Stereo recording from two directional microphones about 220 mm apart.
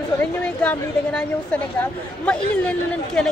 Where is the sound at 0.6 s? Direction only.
5° left (ahead or behind).